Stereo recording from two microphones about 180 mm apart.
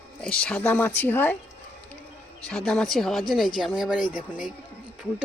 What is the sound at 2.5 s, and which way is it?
Speech, 5° left (ahead or behind).